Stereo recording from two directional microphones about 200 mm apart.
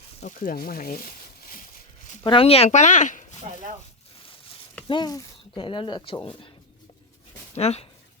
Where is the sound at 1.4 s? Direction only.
45° left (ahead or behind).